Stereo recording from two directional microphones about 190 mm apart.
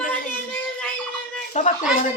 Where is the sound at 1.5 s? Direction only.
35° left (ahead or behind).